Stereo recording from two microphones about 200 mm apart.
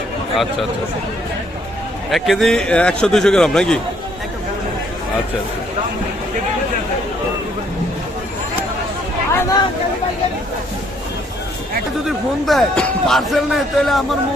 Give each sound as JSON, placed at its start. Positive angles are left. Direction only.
{"t": 2.0, "sound": "a man's voice", "side_deg": 0}
{"t": 9.3, "sound": "a sound", "side_deg": 15}
{"t": 12.0, "sound": "a man's voice", "side_deg": 0}